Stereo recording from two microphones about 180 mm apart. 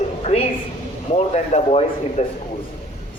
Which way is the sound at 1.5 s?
35° left (ahead or behind).